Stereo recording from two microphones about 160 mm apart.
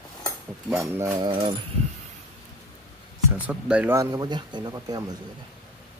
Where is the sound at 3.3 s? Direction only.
10° right (ahead or behind); by 5.0 s 25° right (ahead or behind).